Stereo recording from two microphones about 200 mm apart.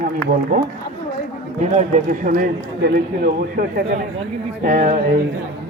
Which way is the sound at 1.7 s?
40° right (ahead or behind).